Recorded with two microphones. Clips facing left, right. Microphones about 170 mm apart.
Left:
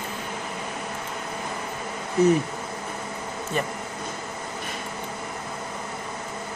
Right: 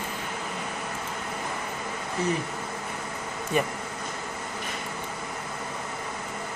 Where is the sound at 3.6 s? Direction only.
10° right (ahead or behind).